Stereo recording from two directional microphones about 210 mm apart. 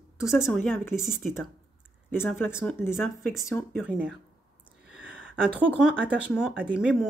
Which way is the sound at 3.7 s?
5° right (ahead or behind).